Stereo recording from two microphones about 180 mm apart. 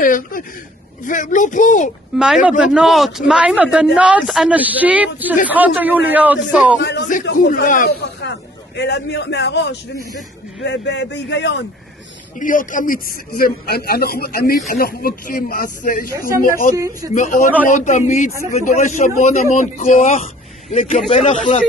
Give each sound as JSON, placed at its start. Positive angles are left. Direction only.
{"t": 0.0, "sound": "speech", "side_deg": 50}
{"t": 2.1, "sound": "a man's voice", "side_deg": -5}
{"t": 6.8, "sound": "a man's voice", "side_deg": 70}
{"t": 7.6, "sound": "speech", "side_deg": 50}
{"t": 8.0, "sound": "a man's voice", "side_deg": 75}
{"t": 12.4, "sound": "a man's voice", "side_deg": 45}
{"t": 16.7, "sound": "speech", "side_deg": -20}
{"t": 17.1, "sound": "a man's voice", "side_deg": 45}